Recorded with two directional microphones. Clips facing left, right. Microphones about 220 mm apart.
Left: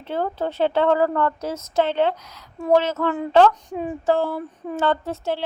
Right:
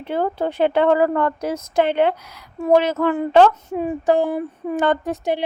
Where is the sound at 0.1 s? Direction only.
15° right (ahead or behind).